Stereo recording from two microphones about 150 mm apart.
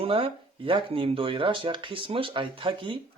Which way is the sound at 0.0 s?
35° right (ahead or behind).